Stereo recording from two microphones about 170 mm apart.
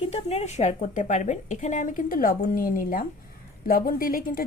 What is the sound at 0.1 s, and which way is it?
A woman's voice, 40° left (ahead or behind).